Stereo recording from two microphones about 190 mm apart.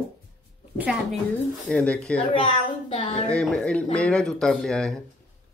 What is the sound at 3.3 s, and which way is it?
Speech, 5° left (ahead or behind).